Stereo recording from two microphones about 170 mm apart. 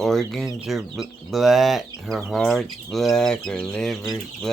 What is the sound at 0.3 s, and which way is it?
Speech, centre (ahead or behind).